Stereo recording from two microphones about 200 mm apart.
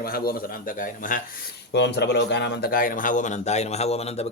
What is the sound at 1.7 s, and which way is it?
Speech, 60° left (ahead or behind).